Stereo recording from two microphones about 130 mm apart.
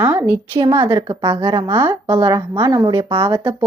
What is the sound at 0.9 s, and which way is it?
Speech, 40° right (ahead or behind).